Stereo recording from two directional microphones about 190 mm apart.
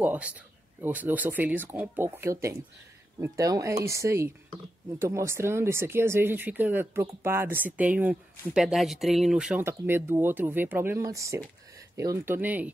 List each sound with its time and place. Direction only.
0.0 s speech: 10° right (ahead or behind)